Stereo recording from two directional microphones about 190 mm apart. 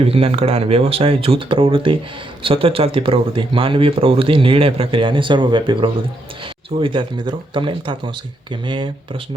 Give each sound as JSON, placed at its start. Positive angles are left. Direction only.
{"t": 0.1, "sound": "speech", "side_deg": -30}